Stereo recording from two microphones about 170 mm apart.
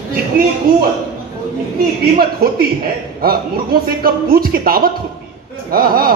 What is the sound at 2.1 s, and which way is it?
A man's voice, 60° right (ahead or behind).